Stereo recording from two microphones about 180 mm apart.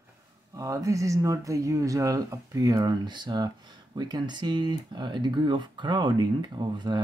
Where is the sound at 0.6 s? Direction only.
20° right (ahead or behind).